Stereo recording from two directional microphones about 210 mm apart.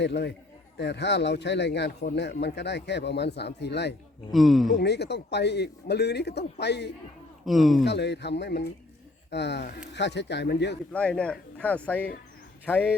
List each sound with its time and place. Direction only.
0.0 s speech: 55° left (ahead or behind)
4.3 s speech: centre (ahead or behind)
4.7 s speech: 50° left (ahead or behind)
7.4 s speech: centre (ahead or behind)
7.9 s speech: 55° left (ahead or behind)
10.9 s speech: 5° left (ahead or behind)